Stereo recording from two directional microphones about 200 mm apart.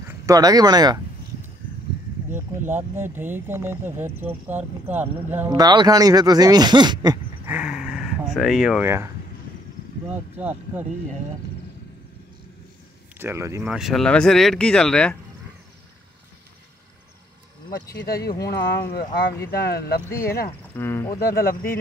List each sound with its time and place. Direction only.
0.3 s speech: 20° right (ahead or behind)
2.3 s speech: 10° right (ahead or behind)
5.5 s speech: 20° right (ahead or behind)
7.4 s dog: 5° right (ahead or behind)
8.8 s speech: 15° right (ahead or behind)
10.1 s speech: 10° right (ahead or behind)
13.2 s speech: 15° right (ahead or behind); by 15.1 s 5° left (ahead or behind)
17.9 s speech: 50° left (ahead or behind)
20.1 s speech: 15° left (ahead or behind)
21.3 s speech: 50° left (ahead or behind)